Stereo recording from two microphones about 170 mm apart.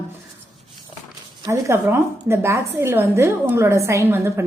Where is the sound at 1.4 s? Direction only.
20° right (ahead or behind).